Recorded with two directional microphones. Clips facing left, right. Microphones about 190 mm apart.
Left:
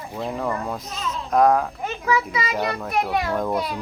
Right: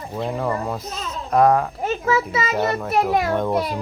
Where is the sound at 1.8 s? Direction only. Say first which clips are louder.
Right 3 dB; 40° right (ahead or behind).